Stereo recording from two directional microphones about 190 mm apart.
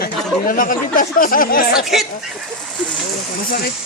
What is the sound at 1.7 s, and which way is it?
Speech, centre (ahead or behind).